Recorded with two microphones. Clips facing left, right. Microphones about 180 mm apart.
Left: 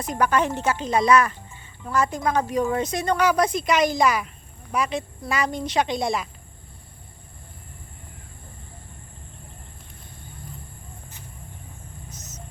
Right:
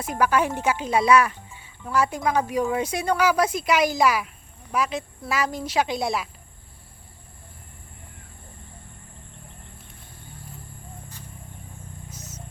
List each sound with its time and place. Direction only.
0.0 s speech: 5° right (ahead or behind)
12.1 s vehicle: 30° right (ahead or behind)